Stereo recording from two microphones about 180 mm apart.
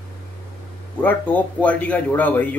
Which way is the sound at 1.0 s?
10° left (ahead or behind).